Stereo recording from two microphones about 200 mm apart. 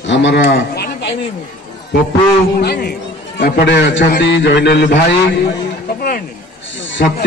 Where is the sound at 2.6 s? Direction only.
50° left (ahead or behind).